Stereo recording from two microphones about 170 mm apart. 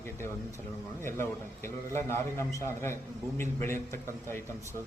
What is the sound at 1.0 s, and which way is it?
A man's voice, 15° left (ahead or behind).